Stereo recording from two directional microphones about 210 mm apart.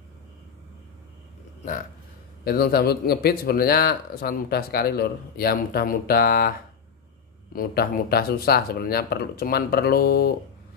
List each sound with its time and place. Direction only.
2.4 s speech: 45° left (ahead or behind)
7.5 s speech: 45° left (ahead or behind)